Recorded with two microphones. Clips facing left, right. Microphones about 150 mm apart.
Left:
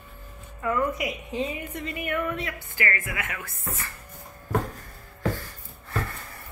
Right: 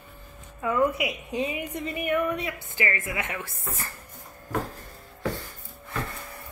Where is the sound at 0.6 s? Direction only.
10° right (ahead or behind).